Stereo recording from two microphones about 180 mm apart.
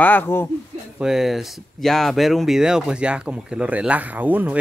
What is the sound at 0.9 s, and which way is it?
Speech, 5° right (ahead or behind).